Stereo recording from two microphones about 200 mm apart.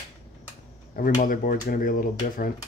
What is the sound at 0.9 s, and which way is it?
Speech, 40° left (ahead or behind).